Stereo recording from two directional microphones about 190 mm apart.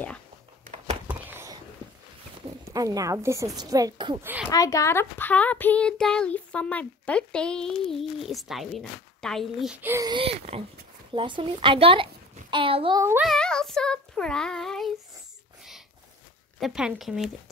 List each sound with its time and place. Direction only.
1.0 s a sound: 15° right (ahead or behind)
2.6 s a woman's voice: 20° right (ahead or behind)
4.5 s a child's voice: 15° left (ahead or behind); by 13.0 s 30° right (ahead or behind)
13.0 s speech: 10° right (ahead or behind)
13.3 s child singing: 5° left (ahead or behind)
16.5 s speech: centre (ahead or behind)